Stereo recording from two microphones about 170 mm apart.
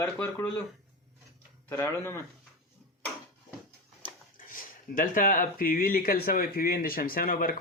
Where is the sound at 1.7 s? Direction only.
15° left (ahead or behind).